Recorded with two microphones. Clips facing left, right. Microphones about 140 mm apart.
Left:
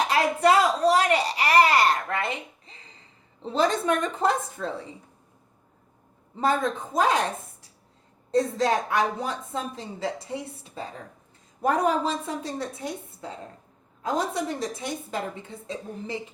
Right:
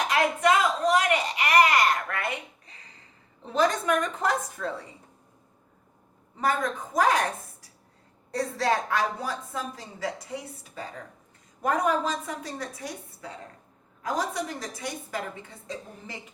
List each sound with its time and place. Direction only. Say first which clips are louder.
0.1 s speech: left 1 dB; 35° left (ahead or behind)
3.4 s a woman's voice: left 1 dB; 30° left (ahead or behind)
6.4 s a woman's voice: left 3 dB; 25° left (ahead or behind)